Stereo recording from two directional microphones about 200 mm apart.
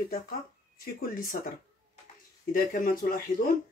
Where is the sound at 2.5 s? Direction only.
45° left (ahead or behind).